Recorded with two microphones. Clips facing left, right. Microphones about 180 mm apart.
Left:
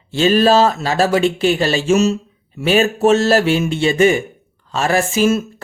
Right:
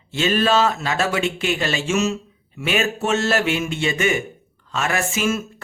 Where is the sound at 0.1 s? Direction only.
35° left (ahead or behind).